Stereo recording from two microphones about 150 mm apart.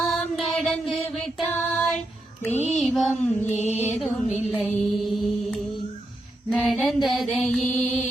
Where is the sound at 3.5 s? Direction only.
50° left (ahead or behind).